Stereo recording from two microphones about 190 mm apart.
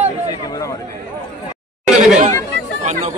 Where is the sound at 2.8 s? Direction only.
40° right (ahead or behind).